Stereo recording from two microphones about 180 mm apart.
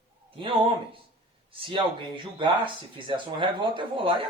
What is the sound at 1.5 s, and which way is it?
Speech, 30° right (ahead or behind).